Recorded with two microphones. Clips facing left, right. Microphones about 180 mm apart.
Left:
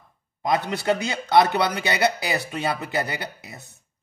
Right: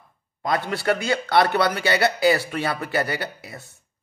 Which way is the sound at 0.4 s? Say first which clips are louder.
Left 1 dB; 20° left (ahead or behind).